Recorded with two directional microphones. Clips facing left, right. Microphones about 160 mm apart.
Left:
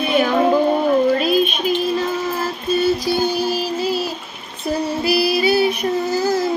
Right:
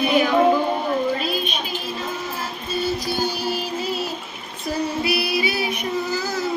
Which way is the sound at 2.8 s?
45° left (ahead or behind).